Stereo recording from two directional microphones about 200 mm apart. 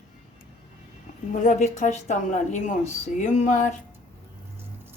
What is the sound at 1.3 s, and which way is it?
Speech, 40° left (ahead or behind).